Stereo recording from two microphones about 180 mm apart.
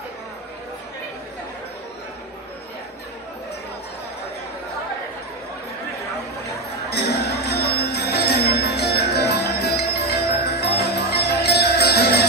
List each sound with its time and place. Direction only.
6.9 s music: 65° left (ahead or behind)